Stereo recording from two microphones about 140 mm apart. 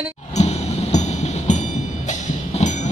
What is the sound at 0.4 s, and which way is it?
Train, 55° left (ahead or behind).